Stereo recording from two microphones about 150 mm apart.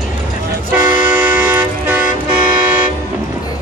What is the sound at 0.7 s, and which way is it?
Toot, 10° right (ahead or behind).